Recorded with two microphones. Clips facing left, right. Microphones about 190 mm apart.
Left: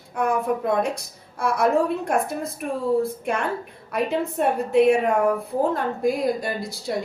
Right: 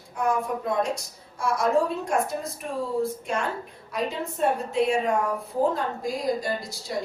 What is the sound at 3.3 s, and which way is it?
A woman's voice, 60° left (ahead or behind).